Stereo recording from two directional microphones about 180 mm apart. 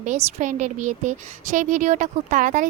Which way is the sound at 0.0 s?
40° right (ahead or behind).